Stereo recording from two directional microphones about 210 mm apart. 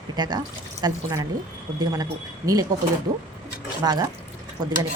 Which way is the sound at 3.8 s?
20° right (ahead or behind).